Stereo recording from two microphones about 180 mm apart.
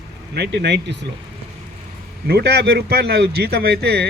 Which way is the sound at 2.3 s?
60° right (ahead or behind).